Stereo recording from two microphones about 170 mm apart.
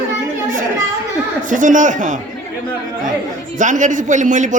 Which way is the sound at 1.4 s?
50° right (ahead or behind).